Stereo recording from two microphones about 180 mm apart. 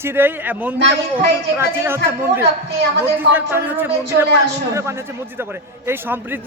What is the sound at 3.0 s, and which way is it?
Speech, 10° right (ahead or behind).